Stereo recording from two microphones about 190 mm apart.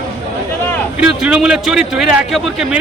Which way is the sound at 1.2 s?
5° right (ahead or behind).